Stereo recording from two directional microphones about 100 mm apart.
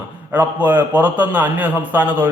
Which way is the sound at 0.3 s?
20° right (ahead or behind).